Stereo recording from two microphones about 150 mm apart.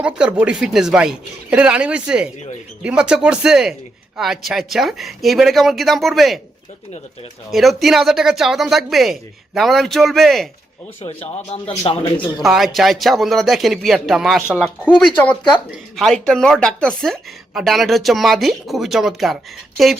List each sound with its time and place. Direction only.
0.0 s speech: 10° right (ahead or behind)
7.5 s speech: centre (ahead or behind)
11.5 s speech: 40° left (ahead or behind)
12.4 s speech: centre (ahead or behind)